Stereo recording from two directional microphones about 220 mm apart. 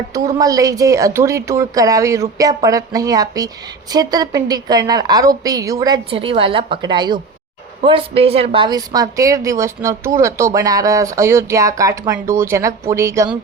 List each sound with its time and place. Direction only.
0.1 s a woman's voice: 15° right (ahead or behind)